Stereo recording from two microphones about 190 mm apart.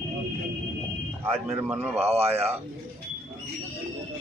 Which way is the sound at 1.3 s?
10° right (ahead or behind).